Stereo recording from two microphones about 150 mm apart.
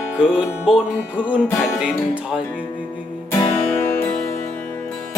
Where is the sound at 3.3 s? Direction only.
15° left (ahead or behind).